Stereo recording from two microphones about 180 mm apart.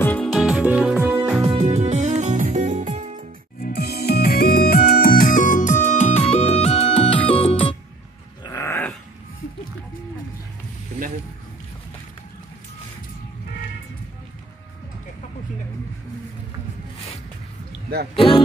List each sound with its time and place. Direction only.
0.0 s music: 5° left (ahead or behind); by 1.4 s 10° right (ahead or behind)
1.6 s music: 40° right (ahead or behind)
3.6 s music: 60° left (ahead or behind); by 7.7 s 30° left (ahead or behind)
8.5 s dog: 15° left (ahead or behind)
18.1 s music: 30° left (ahead or behind)